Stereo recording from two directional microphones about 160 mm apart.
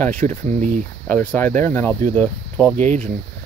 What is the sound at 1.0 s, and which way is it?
Speech, 10° left (ahead or behind).